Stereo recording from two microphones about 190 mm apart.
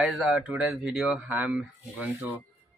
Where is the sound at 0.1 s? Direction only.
5° right (ahead or behind).